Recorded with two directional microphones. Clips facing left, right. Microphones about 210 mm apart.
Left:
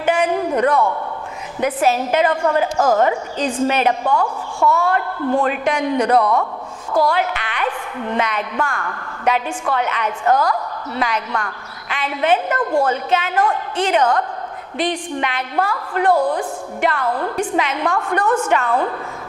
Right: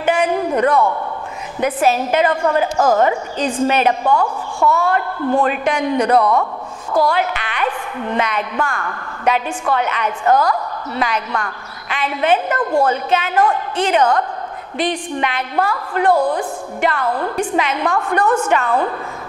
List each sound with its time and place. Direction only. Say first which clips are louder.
0.0 s a sound: right 1 dB; 15° right (ahead or behind)
0.5 s a man's voice: right 2 dB; 25° right (ahead or behind)
1.6 s a woman's voice: right 1 dB; 15° right (ahead or behind)
4.0 s a woman's voice: right 2 dB; 30° right (ahead or behind)
10.3 s a woman's voice: right 2 dB; 30° right (ahead or behind)
11.0 s a woman's voice: right 1 dB; 15° right (ahead or behind)
16.1 s a woman's voice: right 1 dB; 35° right (ahead or behind)
16.8 s a woman's voice: right 1 dB; 20° right (ahead or behind)